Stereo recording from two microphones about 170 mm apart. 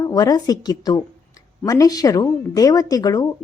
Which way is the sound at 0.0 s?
20° left (ahead or behind).